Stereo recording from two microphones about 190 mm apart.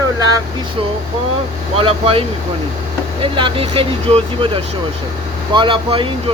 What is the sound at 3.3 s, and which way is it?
Speech, 25° right (ahead or behind).